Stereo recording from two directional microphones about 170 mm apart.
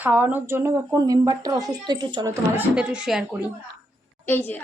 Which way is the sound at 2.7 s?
5° right (ahead or behind).